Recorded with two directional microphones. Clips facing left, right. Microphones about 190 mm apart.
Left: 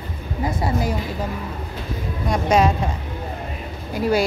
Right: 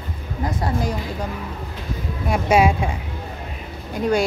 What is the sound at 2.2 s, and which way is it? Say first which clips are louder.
Speech: right 1 dB; 5° right (ahead or behind).